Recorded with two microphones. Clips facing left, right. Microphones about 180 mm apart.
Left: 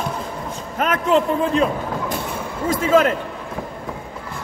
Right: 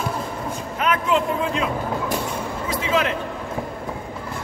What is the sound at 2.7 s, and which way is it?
Speech, 50° left (ahead or behind).